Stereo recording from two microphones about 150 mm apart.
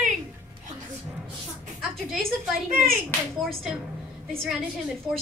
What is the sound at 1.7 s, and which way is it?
Speech, centre (ahead or behind).